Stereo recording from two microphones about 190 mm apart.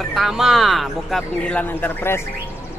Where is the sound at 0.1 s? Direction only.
Centre (ahead or behind).